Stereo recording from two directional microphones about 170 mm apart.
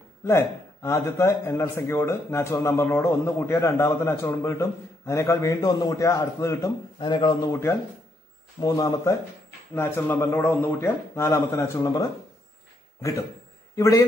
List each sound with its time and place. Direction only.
0.2 s a man's voice: 15° left (ahead or behind)
8.5 s a man's voice: 20° left (ahead or behind)
13.7 s a man's voice: 20° left (ahead or behind)